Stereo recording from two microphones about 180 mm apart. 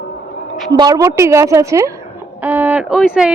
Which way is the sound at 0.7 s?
20° right (ahead or behind).